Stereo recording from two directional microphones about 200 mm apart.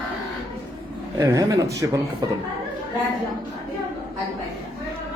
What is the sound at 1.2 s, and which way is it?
Speech, 15° right (ahead or behind).